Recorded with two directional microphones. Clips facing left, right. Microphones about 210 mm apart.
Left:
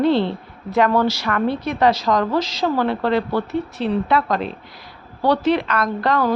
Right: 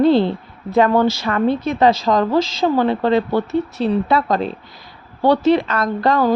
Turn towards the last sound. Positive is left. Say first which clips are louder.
# right 3 dB
turn(degrees=-25)  # may be behind; listen again after turning